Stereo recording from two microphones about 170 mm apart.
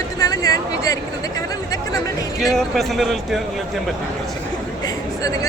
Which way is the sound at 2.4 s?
Centre (ahead or behind).